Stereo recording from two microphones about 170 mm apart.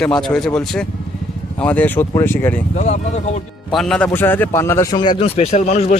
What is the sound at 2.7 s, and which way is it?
Speech, 45° left (ahead or behind).